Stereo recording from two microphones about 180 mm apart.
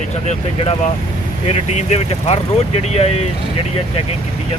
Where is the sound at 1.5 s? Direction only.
40° left (ahead or behind).